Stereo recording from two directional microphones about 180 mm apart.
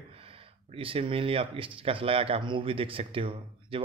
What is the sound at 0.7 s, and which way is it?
Speech, 30° right (ahead or behind).